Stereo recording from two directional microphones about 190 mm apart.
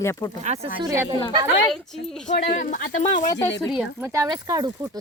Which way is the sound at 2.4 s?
40° left (ahead or behind).